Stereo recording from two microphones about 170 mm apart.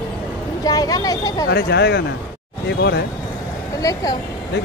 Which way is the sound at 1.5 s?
75° left (ahead or behind).